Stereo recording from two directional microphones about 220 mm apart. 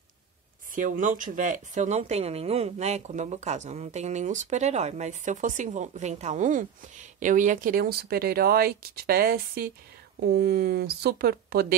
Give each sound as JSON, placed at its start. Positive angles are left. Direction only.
{"t": 0.7, "sound": "speech", "side_deg": -35}